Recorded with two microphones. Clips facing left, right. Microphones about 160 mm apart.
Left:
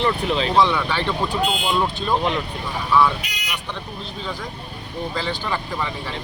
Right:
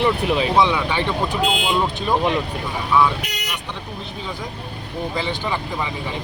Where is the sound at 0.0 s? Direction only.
15° right (ahead or behind).